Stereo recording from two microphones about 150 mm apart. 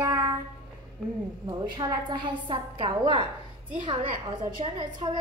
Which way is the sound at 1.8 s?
30° right (ahead or behind).